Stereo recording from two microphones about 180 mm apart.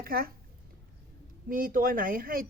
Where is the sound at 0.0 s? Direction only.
55° right (ahead or behind).